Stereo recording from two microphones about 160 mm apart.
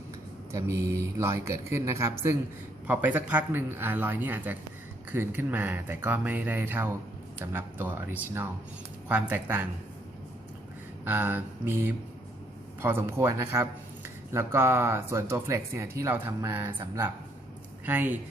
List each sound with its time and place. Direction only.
0.5 s speech: 20° right (ahead or behind)
11.0 s speech: 10° right (ahead or behind)
17.8 s speech: 10° right (ahead or behind)